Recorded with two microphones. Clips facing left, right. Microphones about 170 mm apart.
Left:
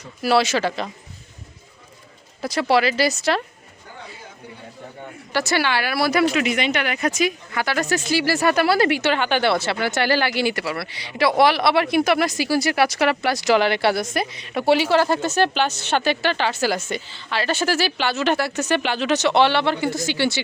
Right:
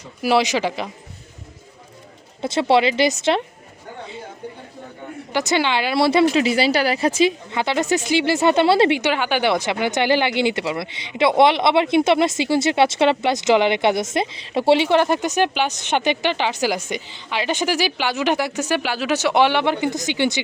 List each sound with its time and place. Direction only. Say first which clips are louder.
0.2 s speech: even; 15° right (ahead or behind)
2.4 s speech: right 2 dB; 25° right (ahead or behind)
5.3 s speech: right 2 dB; 20° right (ahead or behind)
9.0 s speech: even; 10° right (ahead or behind)